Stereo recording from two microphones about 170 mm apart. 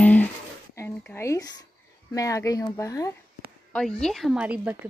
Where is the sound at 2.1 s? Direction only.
20° left (ahead or behind).